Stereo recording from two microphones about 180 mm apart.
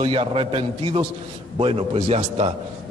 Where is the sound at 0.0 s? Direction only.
30° right (ahead or behind).